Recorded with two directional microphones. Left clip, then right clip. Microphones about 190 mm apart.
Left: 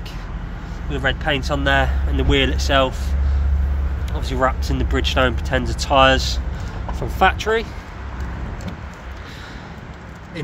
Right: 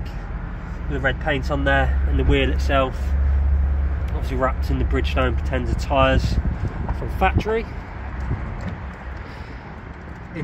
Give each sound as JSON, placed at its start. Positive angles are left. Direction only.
{"t": 0.9, "sound": "speech", "side_deg": 0}
{"t": 4.3, "sound": "speech", "side_deg": 10}